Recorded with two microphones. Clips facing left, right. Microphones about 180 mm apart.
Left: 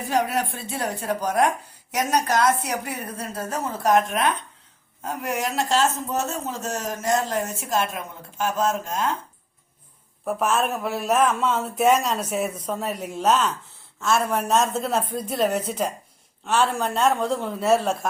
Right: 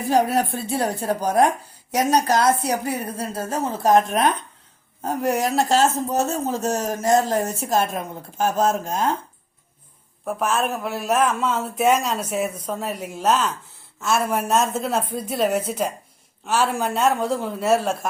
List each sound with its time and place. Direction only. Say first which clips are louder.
0.1 s speech: right 4 dB; 35° right (ahead or behind)
10.2 s speech: even; centre (ahead or behind)